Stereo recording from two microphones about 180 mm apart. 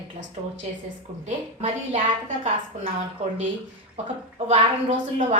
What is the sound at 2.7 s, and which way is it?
Speech, 40° right (ahead or behind).